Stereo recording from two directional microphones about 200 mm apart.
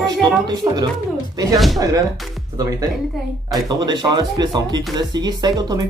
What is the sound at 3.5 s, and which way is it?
Speech, 20° right (ahead or behind).